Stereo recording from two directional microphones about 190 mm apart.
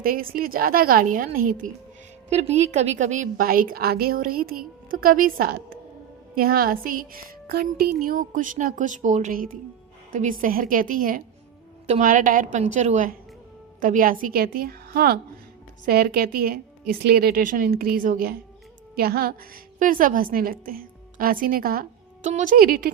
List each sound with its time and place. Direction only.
0.0 s a woman's voice: 50° right (ahead or behind)